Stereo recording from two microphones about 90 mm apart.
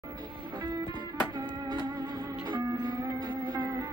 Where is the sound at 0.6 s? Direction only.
45° right (ahead or behind).